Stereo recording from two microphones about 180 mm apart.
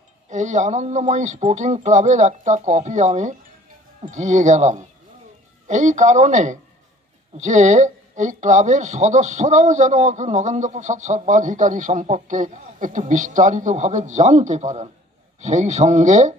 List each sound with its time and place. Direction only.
0.3 s speech: 40° right (ahead or behind)